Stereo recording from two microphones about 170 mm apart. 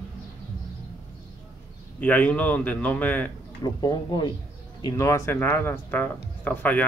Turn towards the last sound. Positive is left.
turn(degrees=10)  # may be behind; listen again after turning